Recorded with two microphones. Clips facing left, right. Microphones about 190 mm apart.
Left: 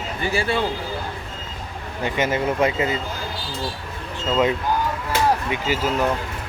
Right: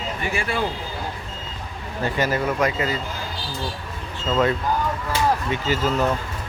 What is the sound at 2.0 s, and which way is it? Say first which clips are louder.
Speech: left 1 dB; 20° left (ahead or behind).